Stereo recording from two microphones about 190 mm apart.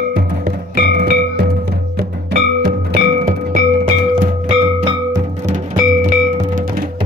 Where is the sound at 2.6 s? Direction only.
50° right (ahead or behind).